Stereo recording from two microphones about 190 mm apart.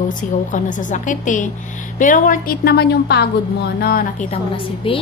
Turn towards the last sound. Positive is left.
turn(degrees=30)  # may be behind; listen again after turning